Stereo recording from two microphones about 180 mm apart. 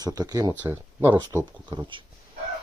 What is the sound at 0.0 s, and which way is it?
Speech, 20° right (ahead or behind).